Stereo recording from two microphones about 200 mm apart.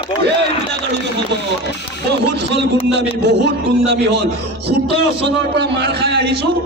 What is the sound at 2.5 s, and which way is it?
A man's voice, 55° right (ahead or behind).